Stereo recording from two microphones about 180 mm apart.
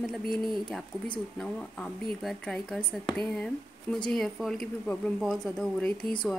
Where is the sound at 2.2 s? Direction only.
5° left (ahead or behind).